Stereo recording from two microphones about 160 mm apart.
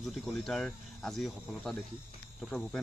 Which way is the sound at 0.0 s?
Centre (ahead or behind).